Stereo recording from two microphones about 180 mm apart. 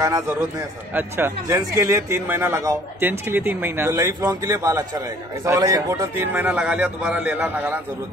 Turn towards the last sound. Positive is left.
turn(degrees=-10)  # may be behind; listen again after turning